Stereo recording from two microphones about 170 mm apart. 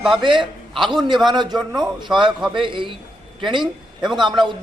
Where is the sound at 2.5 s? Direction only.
30° right (ahead or behind).